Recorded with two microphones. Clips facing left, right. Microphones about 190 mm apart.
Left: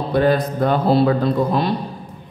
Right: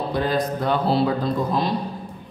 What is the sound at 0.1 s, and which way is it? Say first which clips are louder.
Speech: left 8 dB; 60° left (ahead or behind).